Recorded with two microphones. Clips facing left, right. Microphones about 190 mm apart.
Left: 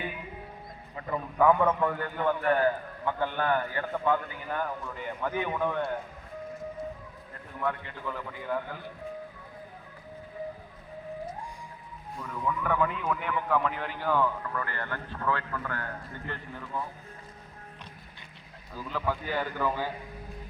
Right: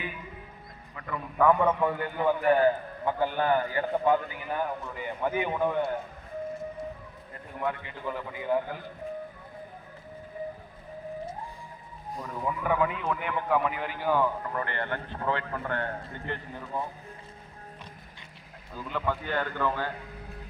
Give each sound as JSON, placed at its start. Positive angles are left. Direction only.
{"t": 0.9, "sound": "a sound", "side_deg": 30}
{"t": 1.4, "sound": "a man's voice", "side_deg": 5}
{"t": 1.6, "sound": "a man's voice", "side_deg": -10}
{"t": 7.6, "sound": "a man's voice", "side_deg": -15}
{"t": 12.1, "sound": "a man's voice", "side_deg": -30}
{"t": 12.6, "sound": "a man's voice", "side_deg": -10}
{"t": 18.7, "sound": "a man's voice", "side_deg": 0}